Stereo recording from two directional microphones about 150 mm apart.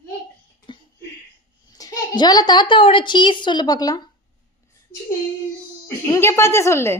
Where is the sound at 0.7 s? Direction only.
35° left (ahead or behind).